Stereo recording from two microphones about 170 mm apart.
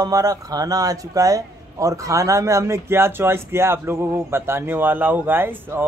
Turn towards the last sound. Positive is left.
turn(degrees=-10)  # may be behind; listen again after turning